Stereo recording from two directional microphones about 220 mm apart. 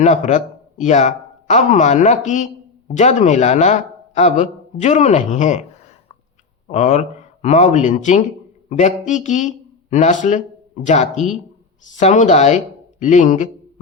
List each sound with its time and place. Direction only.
0.0 s speech: 30° left (ahead or behind)
6.7 s speech: 30° left (ahead or behind)
11.1 s speech: centre (ahead or behind)
11.8 s speech: 35° left (ahead or behind)